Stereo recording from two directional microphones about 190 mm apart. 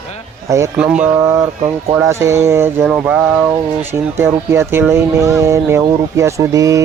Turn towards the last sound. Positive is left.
turn(degrees=-15)  # may be behind; listen again after turning